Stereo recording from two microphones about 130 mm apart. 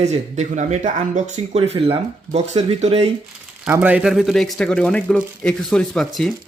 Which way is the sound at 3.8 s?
10° right (ahead or behind).